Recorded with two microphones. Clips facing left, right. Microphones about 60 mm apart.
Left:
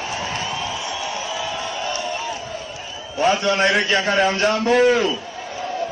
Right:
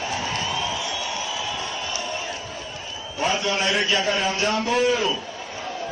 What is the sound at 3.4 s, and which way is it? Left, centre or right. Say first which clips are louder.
A man's voice: left 5 dB; left.